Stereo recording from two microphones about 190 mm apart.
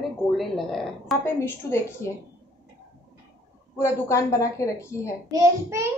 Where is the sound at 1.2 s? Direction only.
15° left (ahead or behind).